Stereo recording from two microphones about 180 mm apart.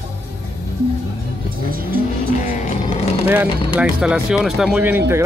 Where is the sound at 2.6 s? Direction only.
35° left (ahead or behind).